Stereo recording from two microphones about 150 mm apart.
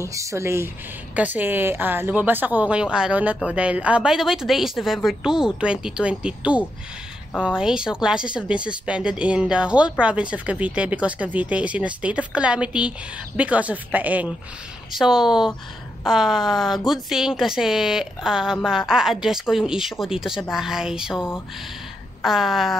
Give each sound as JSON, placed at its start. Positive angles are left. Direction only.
{"t": 0.0, "sound": "speech", "side_deg": -20}
{"t": 22.2, "sound": "speech", "side_deg": 0}